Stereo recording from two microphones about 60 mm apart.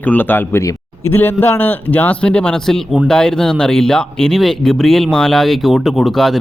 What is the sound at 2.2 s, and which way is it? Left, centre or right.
Speech, centre.